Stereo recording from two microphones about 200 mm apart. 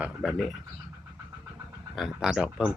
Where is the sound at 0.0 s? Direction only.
Centre (ahead or behind).